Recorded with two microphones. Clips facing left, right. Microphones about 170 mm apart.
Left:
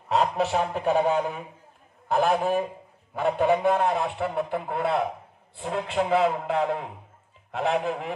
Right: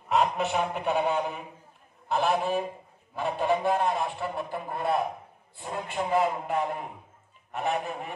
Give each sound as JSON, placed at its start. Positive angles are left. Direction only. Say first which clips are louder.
{"t": 0.1, "sound": "a man's voice", "louder": "left 2 dB", "side_deg": 40}